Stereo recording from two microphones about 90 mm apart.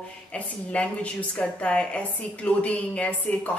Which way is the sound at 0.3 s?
15° left (ahead or behind).